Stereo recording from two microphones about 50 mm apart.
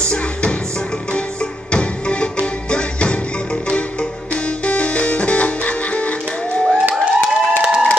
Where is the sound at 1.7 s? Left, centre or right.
Left.